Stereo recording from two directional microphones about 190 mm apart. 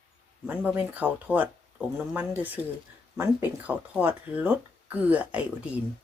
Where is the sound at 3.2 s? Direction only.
10° right (ahead or behind).